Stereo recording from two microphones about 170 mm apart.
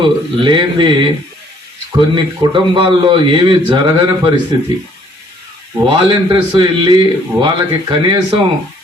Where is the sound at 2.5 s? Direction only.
30° right (ahead or behind).